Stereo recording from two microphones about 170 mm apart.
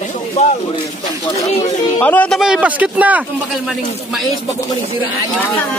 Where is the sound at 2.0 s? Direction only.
10° left (ahead or behind).